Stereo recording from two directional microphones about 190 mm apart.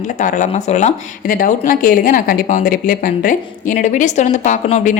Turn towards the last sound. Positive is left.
turn(degrees=40)  # may be behind; listen again after turning